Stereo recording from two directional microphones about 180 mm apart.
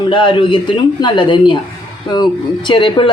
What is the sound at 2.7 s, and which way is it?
Speech, 25° left (ahead or behind).